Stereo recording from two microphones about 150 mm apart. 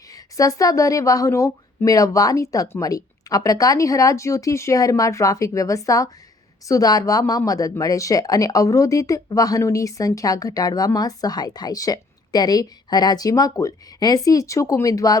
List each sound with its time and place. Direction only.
0.1 s speech: 25° left (ahead or behind)